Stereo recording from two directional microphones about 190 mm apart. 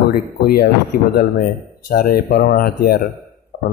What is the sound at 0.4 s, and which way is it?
Speech, 55° left (ahead or behind).